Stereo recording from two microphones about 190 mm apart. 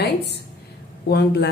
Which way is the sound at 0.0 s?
60° left (ahead or behind).